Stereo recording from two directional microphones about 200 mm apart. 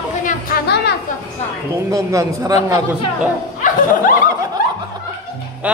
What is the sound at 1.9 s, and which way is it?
Speech, 15° right (ahead or behind).